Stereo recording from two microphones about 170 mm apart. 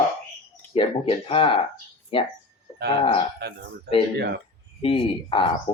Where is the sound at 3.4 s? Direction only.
70° right (ahead or behind).